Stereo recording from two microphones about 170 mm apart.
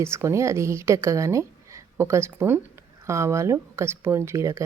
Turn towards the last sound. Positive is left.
turn(degrees=-15)  # may be behind; listen again after turning